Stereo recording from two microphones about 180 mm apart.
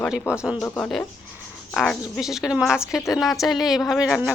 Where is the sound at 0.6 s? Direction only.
10° left (ahead or behind).